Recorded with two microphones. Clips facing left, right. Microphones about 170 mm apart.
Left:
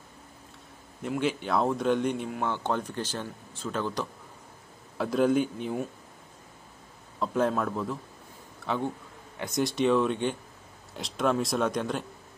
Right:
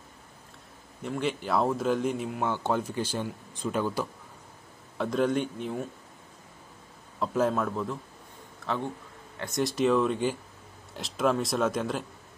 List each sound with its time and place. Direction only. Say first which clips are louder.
1.0 s a man's voice: left 2 dB; centre (ahead or behind)
4.9 s speech: left 2 dB; centre (ahead or behind)
7.2 s speech: even; centre (ahead or behind)
9.6 s speech: even; centre (ahead or behind)